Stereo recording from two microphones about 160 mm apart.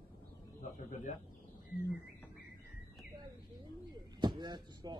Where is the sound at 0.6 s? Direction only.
50° left (ahead or behind).